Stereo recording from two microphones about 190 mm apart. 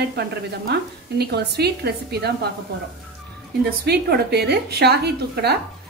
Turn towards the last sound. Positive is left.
turn(degrees=-60)  # may be behind; listen again after turning